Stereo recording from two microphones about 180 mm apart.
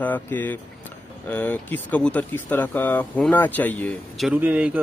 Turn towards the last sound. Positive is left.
turn(degrees=-10)  # may be behind; listen again after turning